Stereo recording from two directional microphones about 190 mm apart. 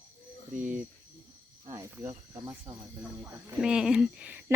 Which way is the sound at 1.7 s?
15° right (ahead or behind).